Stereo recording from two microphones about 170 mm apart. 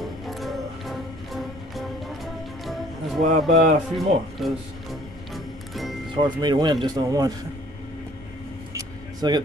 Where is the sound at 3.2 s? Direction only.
50° right (ahead or behind).